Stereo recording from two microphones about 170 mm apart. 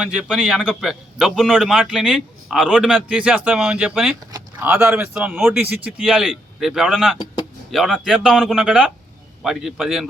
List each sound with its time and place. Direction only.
0.0 s speech: 5° right (ahead or behind)